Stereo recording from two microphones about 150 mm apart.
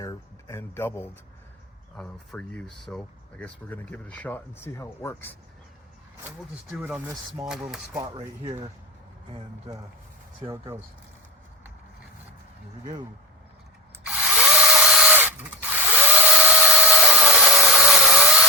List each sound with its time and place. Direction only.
0.0 s speech: 25° left (ahead or behind)
2.0 s speech: 5° left (ahead or behind)
6.7 s speech: centre (ahead or behind)
7.9 s speech: 30° right (ahead or behind)
14.0 s tools: 5° right (ahead or behind)
15.7 s dental drill: 10° right (ahead or behind)
17.7 s a sound: 5° right (ahead or behind)